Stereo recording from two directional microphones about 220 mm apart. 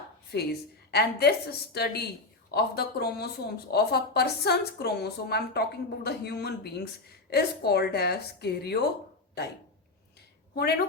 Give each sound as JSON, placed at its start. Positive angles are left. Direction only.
{"t": 0.3, "sound": "a woman's voice", "side_deg": 50}
{"t": 10.5, "sound": "a woman's voice", "side_deg": 45}